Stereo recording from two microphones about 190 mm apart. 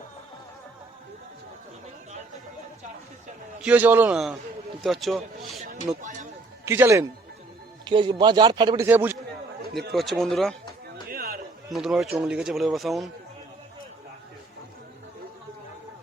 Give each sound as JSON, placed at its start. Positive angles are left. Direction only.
{"t": 3.6, "sound": "a man's voice", "side_deg": -10}
{"t": 6.7, "sound": "a man's voice", "side_deg": -15}
{"t": 7.9, "sound": "a man's voice", "side_deg": -25}
{"t": 9.9, "sound": "speech", "side_deg": 0}
{"t": 11.1, "sound": "a sound", "side_deg": -50}
{"t": 11.7, "sound": "speech", "side_deg": 0}